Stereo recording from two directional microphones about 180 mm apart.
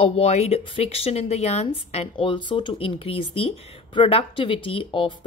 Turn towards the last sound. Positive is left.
turn(degrees=30)  # may be behind; listen again after turning